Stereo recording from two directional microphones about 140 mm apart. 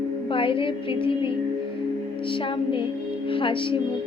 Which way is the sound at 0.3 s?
40° left (ahead or behind).